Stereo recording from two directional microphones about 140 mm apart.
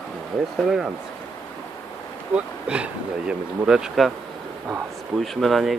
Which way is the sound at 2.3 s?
10° right (ahead or behind).